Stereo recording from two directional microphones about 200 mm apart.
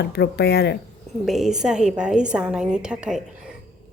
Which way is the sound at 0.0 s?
55° left (ahead or behind).